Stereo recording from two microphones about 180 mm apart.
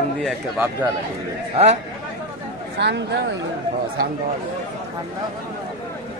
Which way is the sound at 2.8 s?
75° right (ahead or behind).